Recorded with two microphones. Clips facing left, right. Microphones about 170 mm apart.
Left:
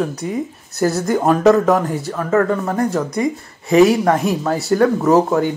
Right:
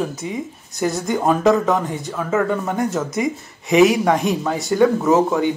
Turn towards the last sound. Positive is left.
turn(degrees=0)  # may be behind; listen again after turning